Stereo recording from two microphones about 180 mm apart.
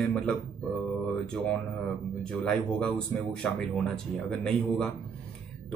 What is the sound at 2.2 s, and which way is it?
Speech, 5° left (ahead or behind).